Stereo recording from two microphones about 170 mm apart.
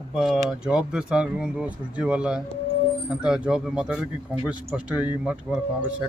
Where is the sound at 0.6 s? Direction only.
5° right (ahead or behind).